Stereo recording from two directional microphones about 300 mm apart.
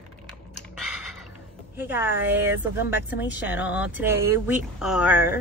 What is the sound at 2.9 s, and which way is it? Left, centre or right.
Speech, left.